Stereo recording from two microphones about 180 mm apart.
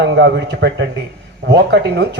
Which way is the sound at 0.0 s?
80° right.